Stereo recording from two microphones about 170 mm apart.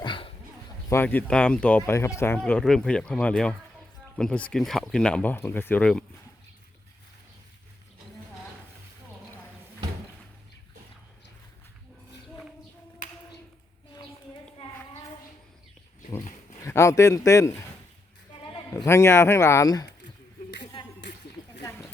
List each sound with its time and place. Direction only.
0.0 s dog: 30° left (ahead or behind)
0.9 s speech: 10° left (ahead or behind)
16.6 s speech: 15° left (ahead or behind)
18.7 s speech: 15° left (ahead or behind)